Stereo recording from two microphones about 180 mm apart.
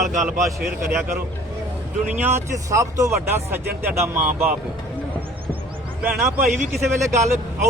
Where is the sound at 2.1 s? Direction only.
10° right (ahead or behind).